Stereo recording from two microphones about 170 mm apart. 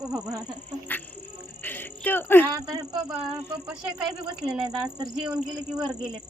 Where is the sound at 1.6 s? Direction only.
10° left (ahead or behind).